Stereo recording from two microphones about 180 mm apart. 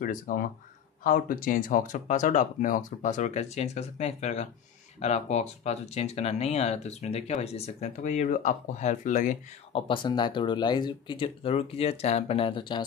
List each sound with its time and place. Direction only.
0.0 s speech: 50° left (ahead or behind); by 12.8 s 25° left (ahead or behind)